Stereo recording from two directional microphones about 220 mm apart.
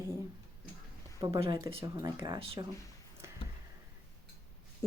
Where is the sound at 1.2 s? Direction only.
20° right (ahead or behind).